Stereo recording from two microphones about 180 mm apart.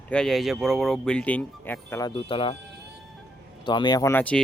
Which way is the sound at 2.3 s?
30° left (ahead or behind).